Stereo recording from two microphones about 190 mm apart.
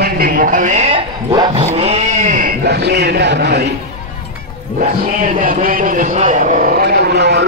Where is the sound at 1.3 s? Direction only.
25° right (ahead or behind); by 3.6 s 65° right (ahead or behind).